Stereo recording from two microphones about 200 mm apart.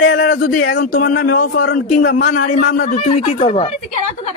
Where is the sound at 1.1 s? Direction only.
75° left (ahead or behind).